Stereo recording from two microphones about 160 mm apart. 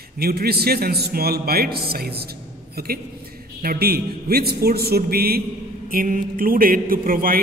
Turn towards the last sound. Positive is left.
turn(degrees=-60)  # may be behind; listen again after turning